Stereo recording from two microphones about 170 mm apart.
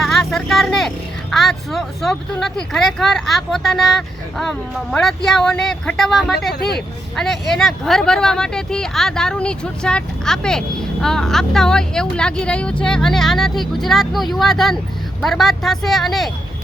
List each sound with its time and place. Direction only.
0.1 s speech: centre (ahead or behind)
6.5 s speech: 70° left (ahead or behind)
7.2 s speech: centre (ahead or behind)